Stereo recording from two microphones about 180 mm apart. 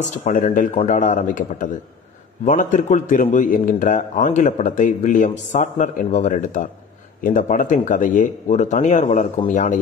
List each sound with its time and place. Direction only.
0.2 s a man's voice: 45° left (ahead or behind)